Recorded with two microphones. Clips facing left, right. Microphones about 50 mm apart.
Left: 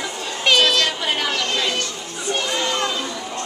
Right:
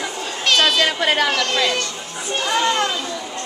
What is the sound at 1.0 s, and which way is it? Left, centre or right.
Speech, right.